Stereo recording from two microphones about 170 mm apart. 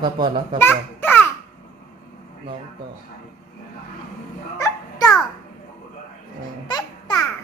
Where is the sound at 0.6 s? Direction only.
10° left (ahead or behind).